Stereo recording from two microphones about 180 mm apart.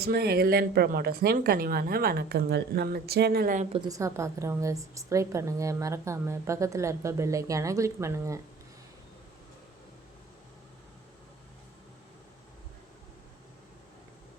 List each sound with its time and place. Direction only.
0.0 s speech: 60° right (ahead or behind)
3.7 s a woman's voice: 20° right (ahead or behind)